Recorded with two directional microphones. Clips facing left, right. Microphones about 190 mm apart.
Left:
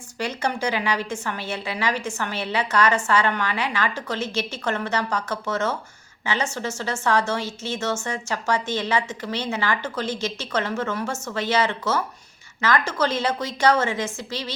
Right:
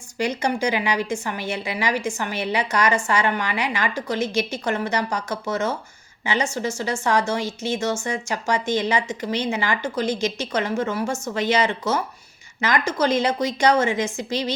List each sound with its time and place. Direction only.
0.2 s speech: 15° right (ahead or behind)